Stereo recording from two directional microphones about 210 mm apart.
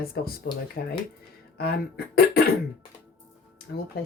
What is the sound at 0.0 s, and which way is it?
Speech, 45° left (ahead or behind).